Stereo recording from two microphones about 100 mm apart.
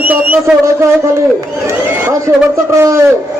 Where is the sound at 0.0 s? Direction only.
15° right (ahead or behind).